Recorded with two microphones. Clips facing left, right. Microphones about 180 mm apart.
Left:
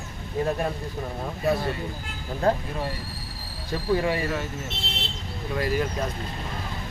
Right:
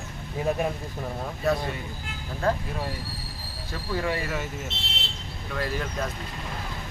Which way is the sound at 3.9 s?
20° left (ahead or behind).